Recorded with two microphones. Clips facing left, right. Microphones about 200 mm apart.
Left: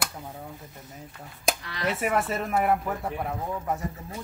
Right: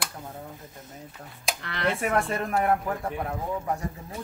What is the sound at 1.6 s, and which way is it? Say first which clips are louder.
Speech: right 2 dB; 60° right (ahead or behind).